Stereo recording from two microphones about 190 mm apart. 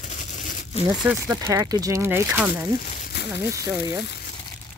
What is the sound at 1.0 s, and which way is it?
Speech, 10° right (ahead or behind).